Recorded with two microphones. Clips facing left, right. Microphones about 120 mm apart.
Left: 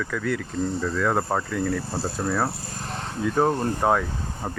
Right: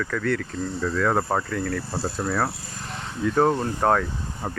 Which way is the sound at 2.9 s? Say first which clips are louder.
Right 1 dB; 40° left (ahead or behind).